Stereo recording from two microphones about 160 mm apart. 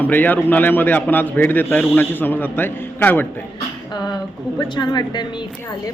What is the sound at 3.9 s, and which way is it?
A woman's voice, 25° left (ahead or behind).